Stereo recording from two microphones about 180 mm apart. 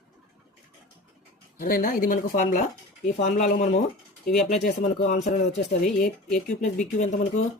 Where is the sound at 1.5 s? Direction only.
50° left (ahead or behind).